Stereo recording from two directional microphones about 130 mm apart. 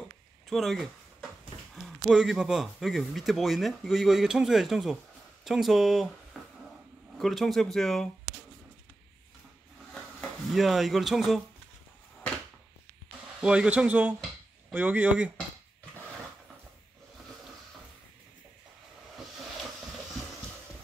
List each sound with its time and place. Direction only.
0.5 s speech: centre (ahead or behind)
6.4 s a sound: centre (ahead or behind)
7.2 s speech: centre (ahead or behind)
10.5 s speech: centre (ahead or behind)
13.4 s speech: 10° right (ahead or behind)